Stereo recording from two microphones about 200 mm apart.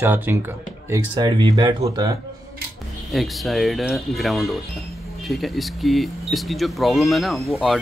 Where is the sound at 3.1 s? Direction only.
Centre (ahead or behind).